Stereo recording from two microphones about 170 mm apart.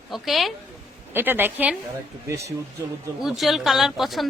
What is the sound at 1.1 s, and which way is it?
Speech, 10° right (ahead or behind).